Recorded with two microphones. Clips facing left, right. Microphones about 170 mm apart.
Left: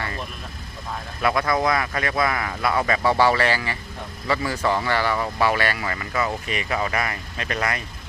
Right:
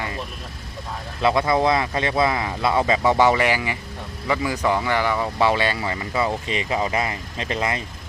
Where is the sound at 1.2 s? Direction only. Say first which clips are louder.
Right 3 dB; 25° right (ahead or behind).